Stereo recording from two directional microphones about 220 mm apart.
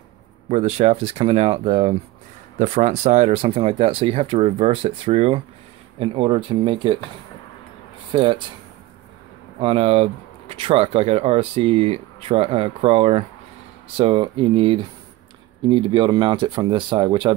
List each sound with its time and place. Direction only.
0.5 s speech: 30° right (ahead or behind)
8.1 s speech: 20° right (ahead or behind)
9.6 s speech: 25° right (ahead or behind)